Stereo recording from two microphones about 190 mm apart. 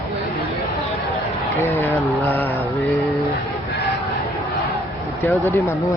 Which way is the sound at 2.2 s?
10° left (ahead or behind).